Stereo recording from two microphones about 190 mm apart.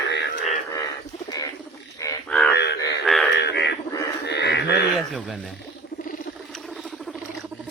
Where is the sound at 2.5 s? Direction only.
65° left (ahead or behind).